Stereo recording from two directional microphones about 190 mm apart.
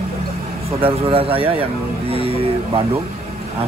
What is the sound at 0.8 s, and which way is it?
Speech, 30° right (ahead or behind).